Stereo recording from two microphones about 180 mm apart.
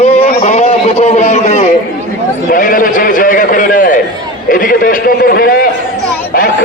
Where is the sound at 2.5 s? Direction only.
50° left (ahead or behind).